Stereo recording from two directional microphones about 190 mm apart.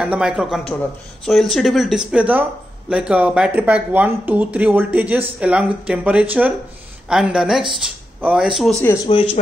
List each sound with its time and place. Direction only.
0.0 s speech: 5° right (ahead or behind)
9.1 s speech: 30° left (ahead or behind)